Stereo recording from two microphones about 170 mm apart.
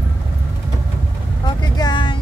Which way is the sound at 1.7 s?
25° left (ahead or behind).